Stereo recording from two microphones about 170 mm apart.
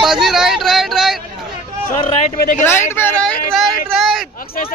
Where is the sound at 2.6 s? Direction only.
15° left (ahead or behind).